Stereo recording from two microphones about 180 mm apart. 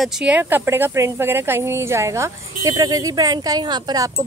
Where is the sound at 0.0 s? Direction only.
5° right (ahead or behind).